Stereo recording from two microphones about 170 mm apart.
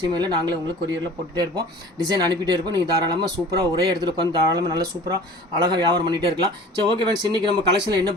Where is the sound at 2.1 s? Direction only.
25° right (ahead or behind).